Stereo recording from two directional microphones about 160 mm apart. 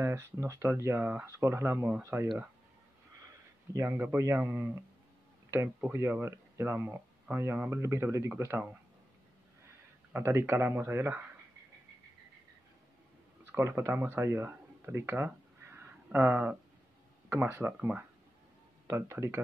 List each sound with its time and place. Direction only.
0.0 s speech: 15° right (ahead or behind)
3.7 s speech: 15° right (ahead or behind)
5.8 s speech: 15° right (ahead or behind)
10.1 s speech: 15° right (ahead or behind)
13.5 s speech: 15° right (ahead or behind)